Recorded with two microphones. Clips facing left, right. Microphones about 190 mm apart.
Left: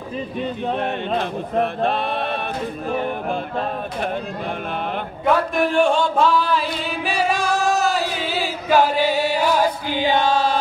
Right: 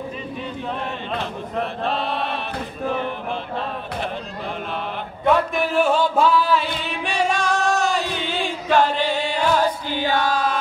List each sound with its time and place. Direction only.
1.6 s chant: 55° left (ahead or behind)
5.2 s music: 5° right (ahead or behind); by 10.6 s 30° left (ahead or behind)